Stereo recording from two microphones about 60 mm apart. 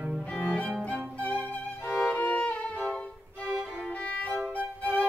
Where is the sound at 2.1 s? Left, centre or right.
Left.